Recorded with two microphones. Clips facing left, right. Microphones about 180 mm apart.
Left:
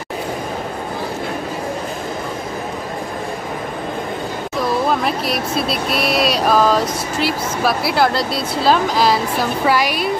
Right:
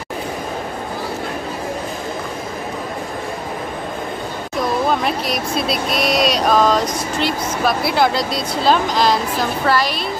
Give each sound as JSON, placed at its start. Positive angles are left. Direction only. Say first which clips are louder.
{"t": 4.8, "sound": "speech", "louder": "even", "side_deg": 0}